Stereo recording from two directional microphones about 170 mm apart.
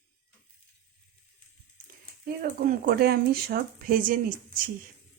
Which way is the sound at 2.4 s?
60° right (ahead or behind).